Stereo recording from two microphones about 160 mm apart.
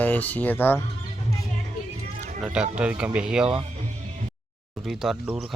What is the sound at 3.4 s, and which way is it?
Speech, 35° right (ahead or behind).